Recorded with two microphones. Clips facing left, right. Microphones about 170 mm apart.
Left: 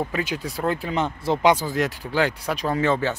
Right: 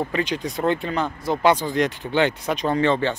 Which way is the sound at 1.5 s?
5° left (ahead or behind).